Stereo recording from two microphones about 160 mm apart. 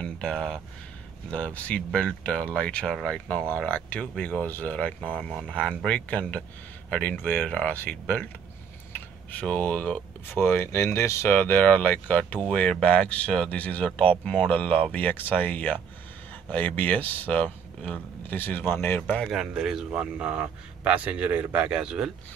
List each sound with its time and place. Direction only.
0.0 s speech: 5° left (ahead or behind)
9.3 s speech: 10° left (ahead or behind)
19.3 s a man's voice: 5° right (ahead or behind)